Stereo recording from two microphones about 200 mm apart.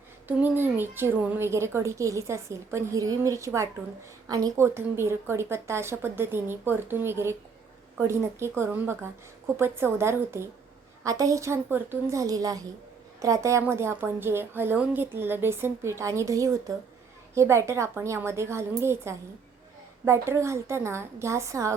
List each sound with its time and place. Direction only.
0.3 s a woman's voice: 10° right (ahead or behind)